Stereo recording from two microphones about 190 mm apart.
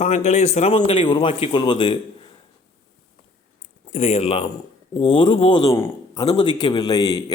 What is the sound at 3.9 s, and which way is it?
A man's voice, 35° left (ahead or behind).